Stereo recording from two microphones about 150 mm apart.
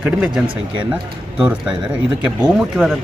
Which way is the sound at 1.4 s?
5° right (ahead or behind).